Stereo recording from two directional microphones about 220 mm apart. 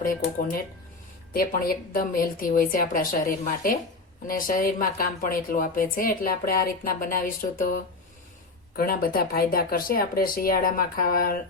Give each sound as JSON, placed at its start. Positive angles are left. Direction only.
{"t": 0.0, "sound": "a woman's voice", "side_deg": 40}